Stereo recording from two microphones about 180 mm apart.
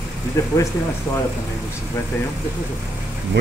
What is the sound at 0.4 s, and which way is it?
Speech, 15° left (ahead or behind).